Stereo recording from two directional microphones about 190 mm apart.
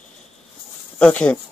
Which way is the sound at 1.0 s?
5° left (ahead or behind).